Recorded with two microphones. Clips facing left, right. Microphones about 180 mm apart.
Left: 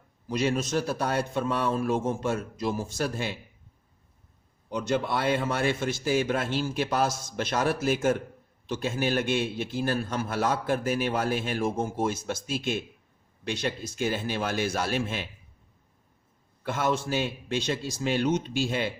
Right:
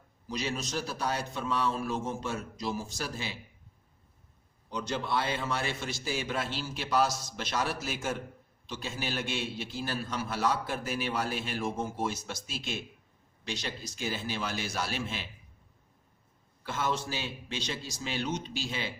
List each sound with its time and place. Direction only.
0.3 s a man's voice: 50° left (ahead or behind)
4.7 s a man's voice: 50° left (ahead or behind)
16.6 s a man's voice: 55° left (ahead or behind)